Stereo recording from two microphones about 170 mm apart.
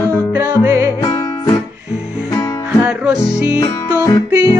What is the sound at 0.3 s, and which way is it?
Music, 10° right (ahead or behind).